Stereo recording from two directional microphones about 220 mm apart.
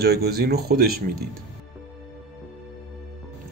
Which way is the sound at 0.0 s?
45° right (ahead or behind).